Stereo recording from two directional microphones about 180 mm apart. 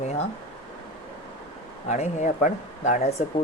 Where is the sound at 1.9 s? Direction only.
40° left (ahead or behind).